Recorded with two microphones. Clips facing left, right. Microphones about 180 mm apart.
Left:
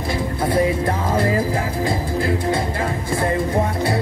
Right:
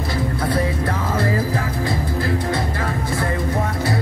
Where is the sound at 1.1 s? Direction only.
20° left (ahead or behind).